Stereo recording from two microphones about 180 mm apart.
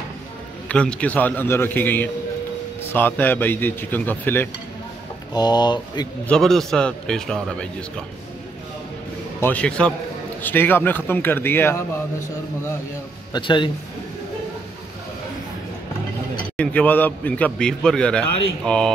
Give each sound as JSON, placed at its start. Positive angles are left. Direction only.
{"t": 0.7, "sound": "a man's voice", "side_deg": 5}
{"t": 5.3, "sound": "speech", "side_deg": 25}
{"t": 6.2, "sound": "a man's voice", "side_deg": 5}
{"t": 9.4, "sound": "a man's voice", "side_deg": 10}
{"t": 13.3, "sound": "speech", "side_deg": 25}
{"t": 16.3, "sound": "a man's voice", "side_deg": 5}